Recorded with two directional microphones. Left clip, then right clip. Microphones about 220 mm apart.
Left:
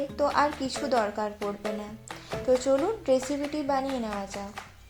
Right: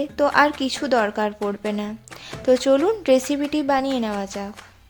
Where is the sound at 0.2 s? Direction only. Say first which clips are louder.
Right 8 dB; 35° right (ahead or behind).